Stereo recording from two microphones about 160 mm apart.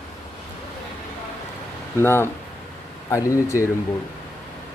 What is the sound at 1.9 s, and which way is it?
Speech, 15° left (ahead or behind).